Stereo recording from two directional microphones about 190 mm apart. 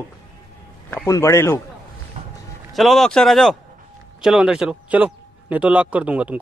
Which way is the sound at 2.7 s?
Centre (ahead or behind).